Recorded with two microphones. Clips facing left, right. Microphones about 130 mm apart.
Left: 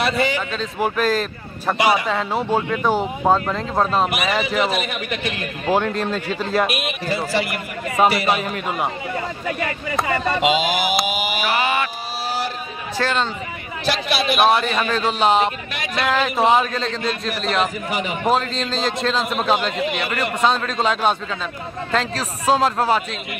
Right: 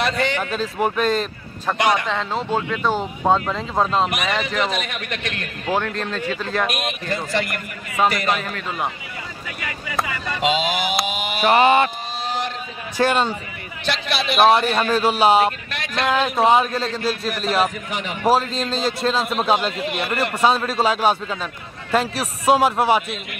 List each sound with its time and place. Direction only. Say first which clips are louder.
0.0 s a man's voice: left 1 dB; 5° left (ahead or behind)
9.5 s speech: left 6 dB; 35° left (ahead or behind)
10.4 s speech: right 2 dB; centre (ahead or behind)
11.4 s mantra: right 8 dB; 30° right (ahead or behind)
12.9 s a man's voice: right 3 dB; 15° right (ahead or behind)
13.8 s a man's voice: left 3 dB; centre (ahead or behind)